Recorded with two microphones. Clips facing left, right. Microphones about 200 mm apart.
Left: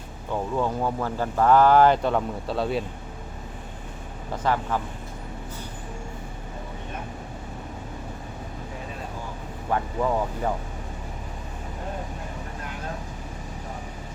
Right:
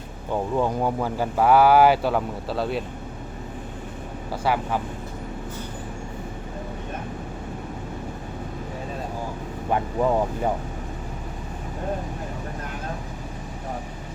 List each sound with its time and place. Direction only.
0.5 s speech: 15° right (ahead or behind); by 2.8 s centre (ahead or behind)
4.3 s speech: 10° right (ahead or behind)
9.6 s speech: 20° right (ahead or behind)